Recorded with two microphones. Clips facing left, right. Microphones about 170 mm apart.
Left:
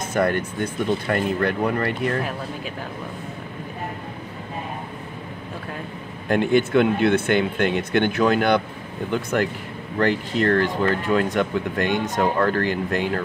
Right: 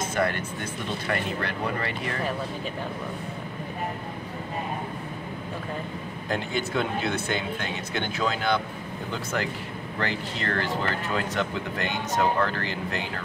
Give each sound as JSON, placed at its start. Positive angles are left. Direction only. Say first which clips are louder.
{"t": 0.1, "sound": "speech", "louder": "left 9 dB", "side_deg": 45}
{"t": 6.2, "sound": "speech", "louder": "left 11 dB", "side_deg": 60}
{"t": 9.9, "sound": "speech", "louder": "left 10 dB", "side_deg": 45}